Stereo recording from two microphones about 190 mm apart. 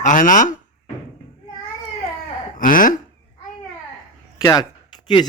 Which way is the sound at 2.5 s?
45° left (ahead or behind).